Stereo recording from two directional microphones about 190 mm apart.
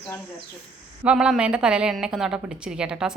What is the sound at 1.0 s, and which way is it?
A woman's voice, 5° right (ahead or behind).